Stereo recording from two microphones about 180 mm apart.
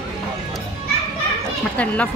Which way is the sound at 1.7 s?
5° left (ahead or behind).